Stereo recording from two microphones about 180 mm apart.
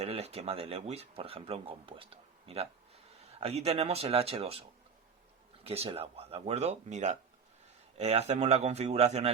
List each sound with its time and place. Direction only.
0.0 s speech: 35° right (ahead or behind)
5.6 s speech: 35° right (ahead or behind)